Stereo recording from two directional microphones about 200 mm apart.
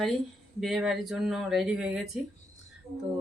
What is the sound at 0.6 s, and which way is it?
Speech, centre (ahead or behind).